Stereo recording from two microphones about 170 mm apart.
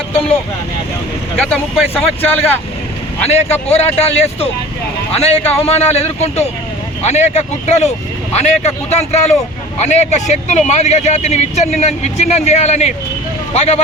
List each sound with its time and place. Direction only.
1.5 s speech: 5° left (ahead or behind)
3.2 s speech: 40° left (ahead or behind)